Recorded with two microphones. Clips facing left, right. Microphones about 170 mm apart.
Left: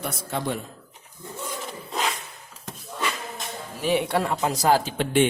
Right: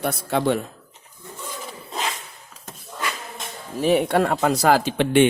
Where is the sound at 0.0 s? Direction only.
65° right (ahead or behind).